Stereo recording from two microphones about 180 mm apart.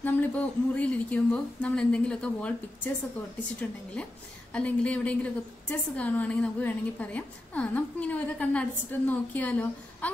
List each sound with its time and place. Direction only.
0.0 s a woman's voice: 10° left (ahead or behind)
4.5 s a woman's voice: 5° left (ahead or behind)